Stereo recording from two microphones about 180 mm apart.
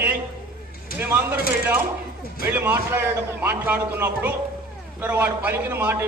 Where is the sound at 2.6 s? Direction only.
10° right (ahead or behind).